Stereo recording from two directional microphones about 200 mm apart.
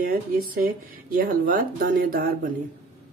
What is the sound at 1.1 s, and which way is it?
Speech, 45° right (ahead or behind).